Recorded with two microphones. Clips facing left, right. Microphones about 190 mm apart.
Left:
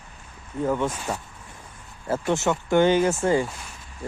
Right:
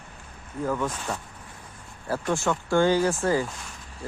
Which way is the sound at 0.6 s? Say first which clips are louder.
Left 3 dB; 25° left (ahead or behind).